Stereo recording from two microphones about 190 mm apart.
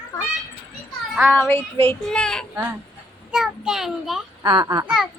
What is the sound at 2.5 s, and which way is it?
A child's voice, 10° right (ahead or behind).